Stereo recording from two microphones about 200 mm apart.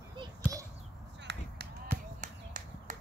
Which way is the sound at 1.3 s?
60° right (ahead or behind).